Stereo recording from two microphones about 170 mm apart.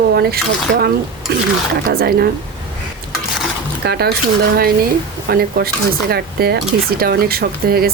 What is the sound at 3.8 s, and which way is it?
Speech, 70° right (ahead or behind).